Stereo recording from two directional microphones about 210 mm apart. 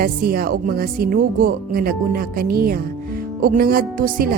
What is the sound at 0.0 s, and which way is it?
Speech, 45° right (ahead or behind).